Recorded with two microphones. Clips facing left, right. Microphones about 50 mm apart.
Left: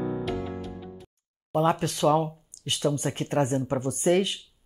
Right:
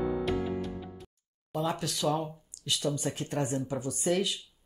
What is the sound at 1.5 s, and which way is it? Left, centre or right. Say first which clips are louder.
Speech: left 8 dB; left.